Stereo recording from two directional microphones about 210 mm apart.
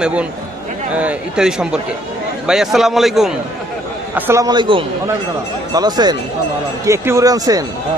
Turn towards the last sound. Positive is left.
turn(degrees=-15)  # may be behind; listen again after turning